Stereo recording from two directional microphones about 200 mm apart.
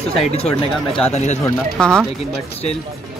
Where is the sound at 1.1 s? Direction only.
35° left (ahead or behind).